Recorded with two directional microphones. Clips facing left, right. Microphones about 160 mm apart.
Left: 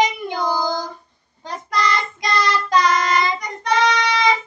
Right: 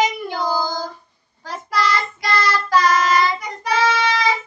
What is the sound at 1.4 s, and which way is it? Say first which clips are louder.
Child singing: even; 5° right (ahead or behind).